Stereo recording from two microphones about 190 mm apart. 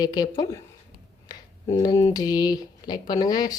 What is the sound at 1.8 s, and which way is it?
Speech, 20° left (ahead or behind).